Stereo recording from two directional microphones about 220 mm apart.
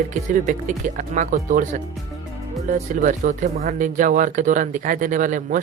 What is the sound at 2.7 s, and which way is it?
Speech, 35° right (ahead or behind).